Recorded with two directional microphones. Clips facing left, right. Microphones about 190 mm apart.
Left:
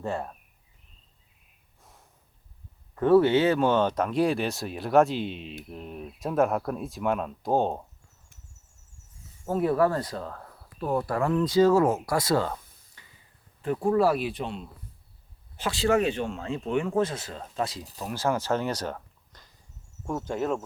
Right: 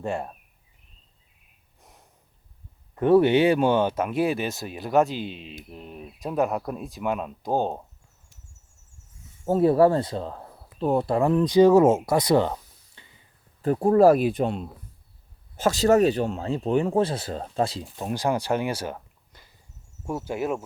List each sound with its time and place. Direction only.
0.0 s speech: 15° right (ahead or behind)
1.8 s snort: 20° right (ahead or behind)
2.9 s speech: 20° right (ahead or behind); by 7.9 s centre (ahead or behind)
9.5 s speech: 30° right (ahead or behind)
13.0 s a sound: 25° right (ahead or behind)
13.6 s speech: 40° right (ahead or behind); by 20.7 s 10° right (ahead or behind)